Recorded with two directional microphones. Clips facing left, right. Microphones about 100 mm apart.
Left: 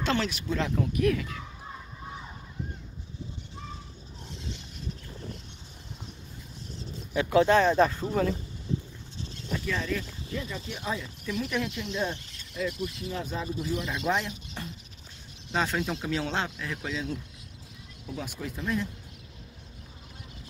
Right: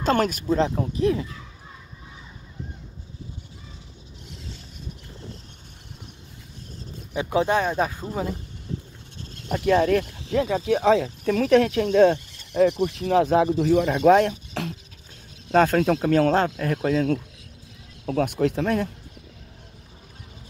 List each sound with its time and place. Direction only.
0.0 s speech: 50° right (ahead or behind)
0.6 s speech: 30° right (ahead or behind)
7.2 s speech: 20° right (ahead or behind)
9.2 s speech: 50° right (ahead or behind); by 11.1 s 80° right
11.5 s speech: 65° right (ahead or behind)
14.6 s patter: 90° right
15.5 s speech: 50° right (ahead or behind)
18.0 s speech: 65° right (ahead or behind)